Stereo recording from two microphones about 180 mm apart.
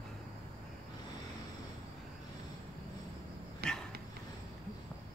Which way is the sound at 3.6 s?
60° right (ahead or behind).